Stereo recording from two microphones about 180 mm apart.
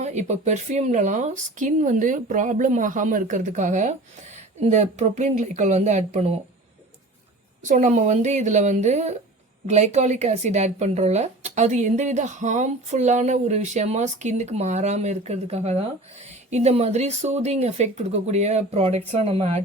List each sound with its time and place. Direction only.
0.0 s speech: 40° right (ahead or behind)
7.6 s speech: 45° right (ahead or behind)